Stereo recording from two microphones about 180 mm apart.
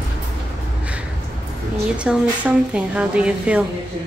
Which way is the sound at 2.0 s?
5° right (ahead or behind).